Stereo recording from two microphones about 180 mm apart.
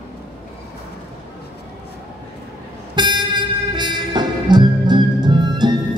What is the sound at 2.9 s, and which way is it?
Music, 25° right (ahead or behind).